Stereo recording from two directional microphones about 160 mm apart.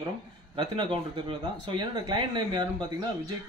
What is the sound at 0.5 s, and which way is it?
Speech, 30° right (ahead or behind).